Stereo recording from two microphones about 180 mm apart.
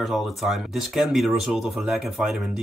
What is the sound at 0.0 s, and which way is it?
Speech, centre (ahead or behind).